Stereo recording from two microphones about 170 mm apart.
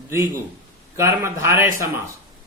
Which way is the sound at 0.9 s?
15° right (ahead or behind).